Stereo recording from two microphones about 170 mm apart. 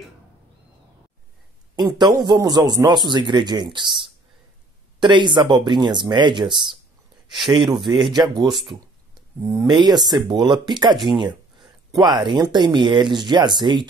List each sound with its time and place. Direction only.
1.9 s a man's voice: 25° right (ahead or behind)
8.5 s a sound: centre (ahead or behind)
9.4 s a man's voice: 15° right (ahead or behind)